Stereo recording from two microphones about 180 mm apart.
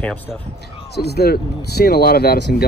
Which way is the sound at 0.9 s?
65° left (ahead or behind).